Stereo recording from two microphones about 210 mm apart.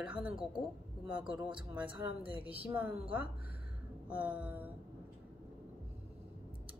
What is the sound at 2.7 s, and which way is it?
A woman's voice, 10° right (ahead or behind).